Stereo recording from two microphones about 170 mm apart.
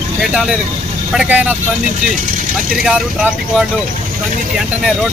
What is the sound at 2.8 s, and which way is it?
Speech, 5° right (ahead or behind).